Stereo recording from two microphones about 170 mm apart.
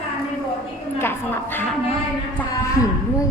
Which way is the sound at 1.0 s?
15° left (ahead or behind).